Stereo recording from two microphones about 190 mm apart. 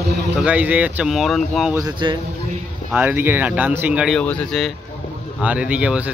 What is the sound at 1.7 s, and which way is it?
Speech, 20° right (ahead or behind).